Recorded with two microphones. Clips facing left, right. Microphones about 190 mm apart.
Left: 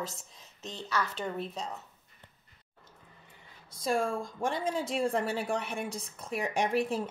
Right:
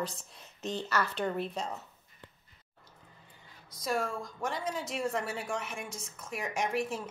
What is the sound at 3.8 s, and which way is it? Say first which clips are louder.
A woman's voice: left 3 dB; 30° left (ahead or behind).